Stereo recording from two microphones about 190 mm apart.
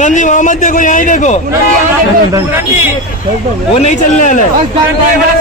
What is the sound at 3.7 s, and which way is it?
Speech, 40° left (ahead or behind).